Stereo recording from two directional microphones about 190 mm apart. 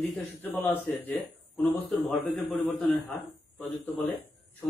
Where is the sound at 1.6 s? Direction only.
Centre (ahead or behind).